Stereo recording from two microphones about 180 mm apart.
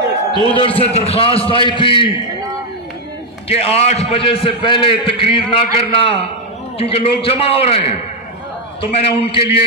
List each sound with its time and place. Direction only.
0.5 s a man's voice: 30° left (ahead or behind)
3.4 s a man's voice: 35° left (ahead or behind)